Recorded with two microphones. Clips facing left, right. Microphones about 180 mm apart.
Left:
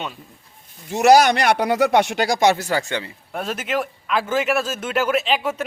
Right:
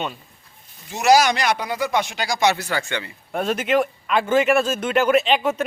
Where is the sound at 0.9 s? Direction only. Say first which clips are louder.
Left 3 dB; 55° left (ahead or behind); by 3.1 s 35° left (ahead or behind).